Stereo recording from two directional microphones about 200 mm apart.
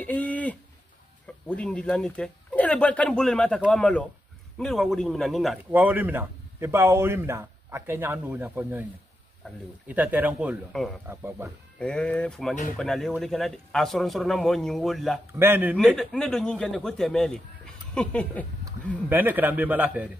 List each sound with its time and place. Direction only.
0.0 s a sound: 10° left (ahead or behind)
1.2 s a man's voice: 5° left (ahead or behind)
9.8 s a man's voice: 10° right (ahead or behind)
11.1 s a man's voice: 10° right (ahead or behind)
11.8 s speech: 5° left (ahead or behind)
15.3 s a man's voice: 10° right (ahead or behind)
16.0 s speech: 5° left (ahead or behind)
19.0 s a man's voice: 10° right (ahead or behind)